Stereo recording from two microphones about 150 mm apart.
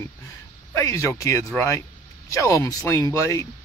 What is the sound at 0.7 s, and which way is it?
Speech, 20° left (ahead or behind).